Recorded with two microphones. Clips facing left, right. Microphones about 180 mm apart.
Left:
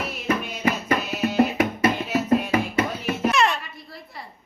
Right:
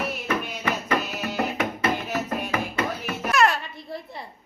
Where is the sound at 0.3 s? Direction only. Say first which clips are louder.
Left 6 dB; 30° left (ahead or behind).